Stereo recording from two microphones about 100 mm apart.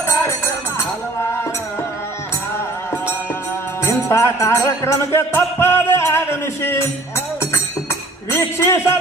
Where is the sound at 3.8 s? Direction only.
30° left (ahead or behind).